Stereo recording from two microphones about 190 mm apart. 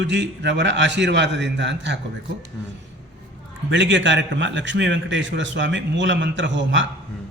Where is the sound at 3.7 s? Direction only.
75° right (ahead or behind).